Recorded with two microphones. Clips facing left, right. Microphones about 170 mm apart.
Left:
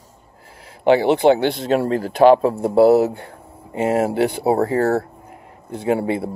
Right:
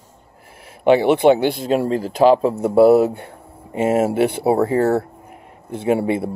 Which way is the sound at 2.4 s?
30° left (ahead or behind).